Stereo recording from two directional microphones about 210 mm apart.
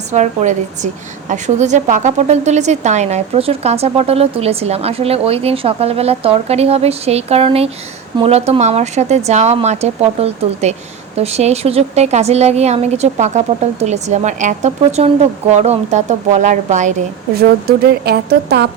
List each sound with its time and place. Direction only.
0.1 s a woman's voice: 35° right (ahead or behind)
17.3 s a woman's voice: 50° right (ahead or behind)